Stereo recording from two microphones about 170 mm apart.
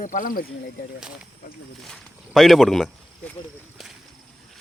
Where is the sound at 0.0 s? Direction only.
50° left (ahead or behind).